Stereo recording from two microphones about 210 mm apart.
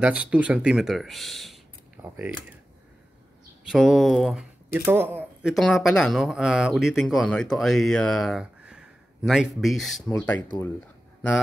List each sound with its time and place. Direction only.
0.0 s speech: 5° right (ahead or behind)
3.6 s speech: centre (ahead or behind)
5.5 s speech: centre (ahead or behind)